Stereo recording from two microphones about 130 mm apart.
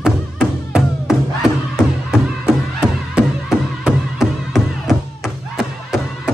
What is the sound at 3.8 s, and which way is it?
Music, 5° right (ahead or behind).